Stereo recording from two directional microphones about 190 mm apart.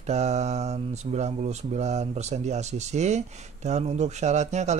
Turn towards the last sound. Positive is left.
turn(degrees=-35)  # may be behind; listen again after turning